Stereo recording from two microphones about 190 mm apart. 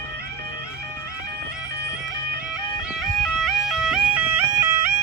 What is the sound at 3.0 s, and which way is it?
Music, centre (ahead or behind).